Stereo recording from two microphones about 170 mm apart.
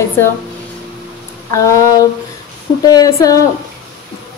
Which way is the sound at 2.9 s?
20° left (ahead or behind).